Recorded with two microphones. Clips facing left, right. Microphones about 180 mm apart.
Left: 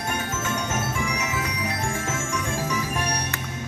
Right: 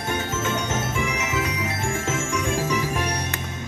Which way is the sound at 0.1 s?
25° right (ahead or behind).